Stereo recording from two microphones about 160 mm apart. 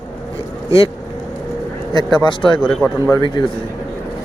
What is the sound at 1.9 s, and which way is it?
Speech, 30° left (ahead or behind).